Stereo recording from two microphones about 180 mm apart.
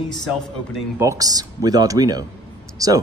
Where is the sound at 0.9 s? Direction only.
20° right (ahead or behind).